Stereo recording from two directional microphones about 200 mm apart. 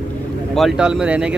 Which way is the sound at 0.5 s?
Centre (ahead or behind).